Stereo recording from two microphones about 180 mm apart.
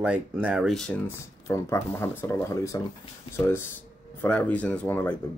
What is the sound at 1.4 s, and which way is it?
Speech, 15° left (ahead or behind).